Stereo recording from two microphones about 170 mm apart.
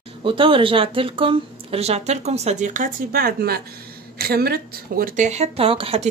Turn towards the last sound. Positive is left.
turn(degrees=-35)  # may be behind; listen again after turning